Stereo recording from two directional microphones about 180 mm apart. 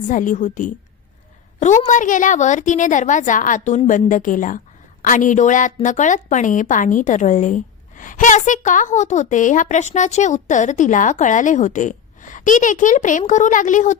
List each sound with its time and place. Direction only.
0.1 s a woman's voice: 45° left (ahead or behind)